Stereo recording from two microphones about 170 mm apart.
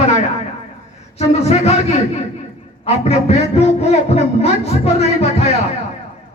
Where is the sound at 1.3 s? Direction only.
40° left (ahead or behind).